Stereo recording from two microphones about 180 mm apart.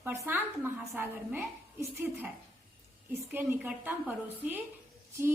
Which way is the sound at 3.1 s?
10° right (ahead or behind).